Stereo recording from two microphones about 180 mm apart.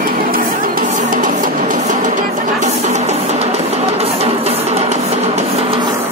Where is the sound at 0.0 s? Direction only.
55° right (ahead or behind); by 5.9 s 30° right (ahead or behind).